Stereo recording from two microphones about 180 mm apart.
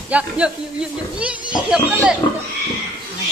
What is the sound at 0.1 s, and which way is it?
Speech, 5° right (ahead or behind).